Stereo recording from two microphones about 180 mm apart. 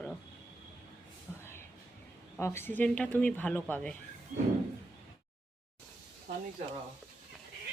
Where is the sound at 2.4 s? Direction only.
15° left (ahead or behind).